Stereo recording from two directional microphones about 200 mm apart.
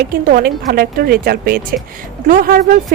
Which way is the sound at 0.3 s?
45° right (ahead or behind).